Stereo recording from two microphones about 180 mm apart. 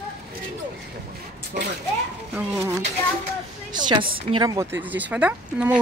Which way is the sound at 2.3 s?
15° right (ahead or behind).